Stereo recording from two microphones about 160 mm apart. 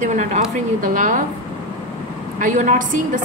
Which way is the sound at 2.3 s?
50° right (ahead or behind).